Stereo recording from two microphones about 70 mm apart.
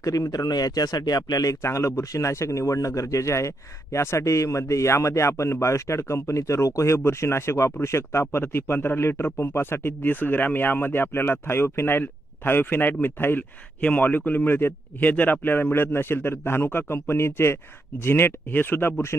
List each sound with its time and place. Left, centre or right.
0.0 s speech: left
1.6 s a man's voice: left